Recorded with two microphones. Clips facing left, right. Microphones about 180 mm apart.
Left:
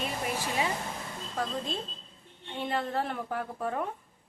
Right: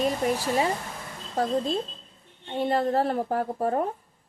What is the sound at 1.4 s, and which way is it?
A woman's voice, 35° right (ahead or behind).